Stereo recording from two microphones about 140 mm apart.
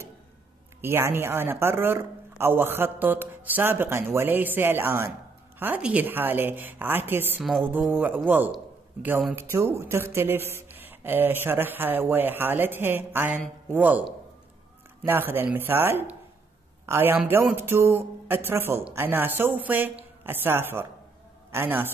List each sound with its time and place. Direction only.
0.7 s speech: 15° right (ahead or behind)
15.0 s a man's voice: 15° right (ahead or behind)